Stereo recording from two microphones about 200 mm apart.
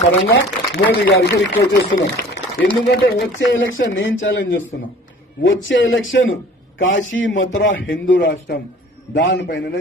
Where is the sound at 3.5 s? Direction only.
70° left (ahead or behind).